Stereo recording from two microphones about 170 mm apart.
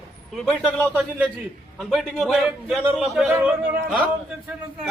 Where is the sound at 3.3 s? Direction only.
10° right (ahead or behind).